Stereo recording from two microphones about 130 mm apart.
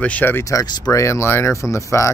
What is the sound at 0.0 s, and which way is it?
Speech, 15° left (ahead or behind).